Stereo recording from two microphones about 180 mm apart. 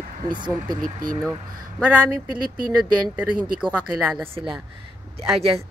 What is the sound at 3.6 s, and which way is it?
Speech, centre (ahead or behind).